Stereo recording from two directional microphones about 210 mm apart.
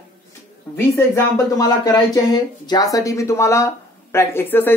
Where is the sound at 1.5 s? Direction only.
20° left (ahead or behind).